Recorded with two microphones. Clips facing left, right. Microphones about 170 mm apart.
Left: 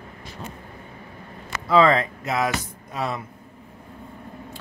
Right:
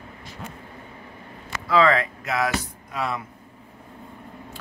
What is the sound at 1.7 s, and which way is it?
A man's voice, 25° left (ahead or behind).